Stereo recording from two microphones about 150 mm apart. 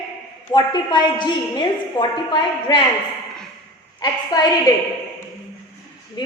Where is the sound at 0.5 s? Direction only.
30° left (ahead or behind).